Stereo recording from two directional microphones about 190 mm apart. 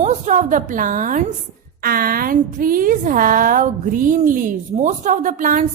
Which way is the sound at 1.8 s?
50° right (ahead or behind).